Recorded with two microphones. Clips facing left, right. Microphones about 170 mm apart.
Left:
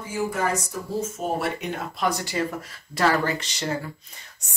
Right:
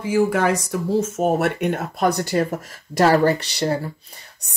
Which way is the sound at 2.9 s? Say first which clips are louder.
Right 7 dB; 40° right (ahead or behind).